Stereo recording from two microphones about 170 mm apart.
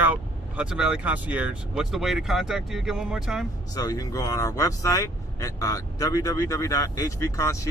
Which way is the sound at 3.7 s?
20° left (ahead or behind).